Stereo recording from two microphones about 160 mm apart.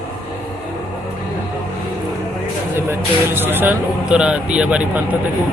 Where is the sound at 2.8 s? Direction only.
15° right (ahead or behind).